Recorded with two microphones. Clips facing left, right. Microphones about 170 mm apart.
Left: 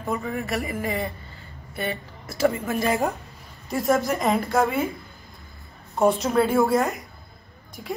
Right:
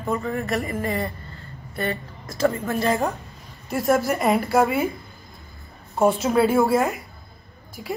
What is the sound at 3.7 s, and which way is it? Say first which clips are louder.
Speech: right 1 dB; centre (ahead or behind).